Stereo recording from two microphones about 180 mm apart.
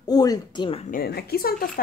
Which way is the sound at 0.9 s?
60° left (ahead or behind).